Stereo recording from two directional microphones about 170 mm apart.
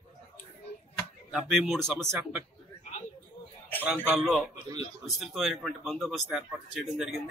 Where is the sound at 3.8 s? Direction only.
5° right (ahead or behind).